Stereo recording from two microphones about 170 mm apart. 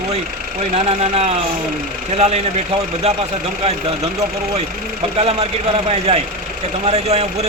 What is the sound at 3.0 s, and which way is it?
Speech, 40° right (ahead or behind).